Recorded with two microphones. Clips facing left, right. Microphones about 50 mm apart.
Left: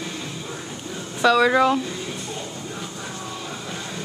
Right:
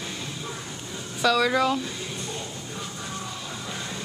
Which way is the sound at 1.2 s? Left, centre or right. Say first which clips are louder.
Left 5 dB; centre.